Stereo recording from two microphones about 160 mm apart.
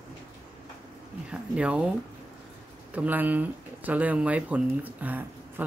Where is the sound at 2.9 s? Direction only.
10° right (ahead or behind).